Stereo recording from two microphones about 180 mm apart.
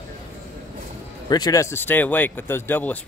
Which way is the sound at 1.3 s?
20° left (ahead or behind).